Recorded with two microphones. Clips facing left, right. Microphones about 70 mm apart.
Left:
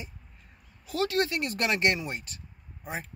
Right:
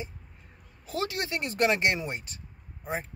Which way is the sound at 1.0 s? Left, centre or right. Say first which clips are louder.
Left 5 dB; centre.